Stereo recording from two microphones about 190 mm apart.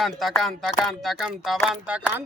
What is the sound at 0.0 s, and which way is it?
Speech, centre (ahead or behind).